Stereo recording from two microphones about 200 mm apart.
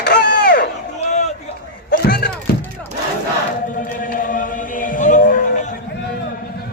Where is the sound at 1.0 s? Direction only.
35° left (ahead or behind).